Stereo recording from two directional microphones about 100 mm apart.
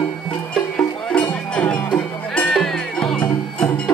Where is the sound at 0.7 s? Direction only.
10° left (ahead or behind).